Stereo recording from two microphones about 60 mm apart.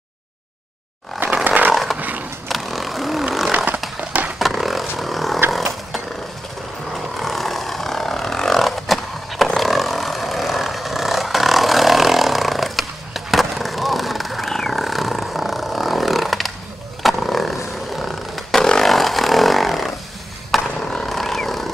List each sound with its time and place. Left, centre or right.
1.2 s chainsaw: right
2.0 s roaring cats: right
2.4 s a sound: centre
3.5 s chainsaw: right
4.4 s vehicle: centre
6.9 s vehicle: centre
17.0 s a sound: centre
20.8 s vehicle: centre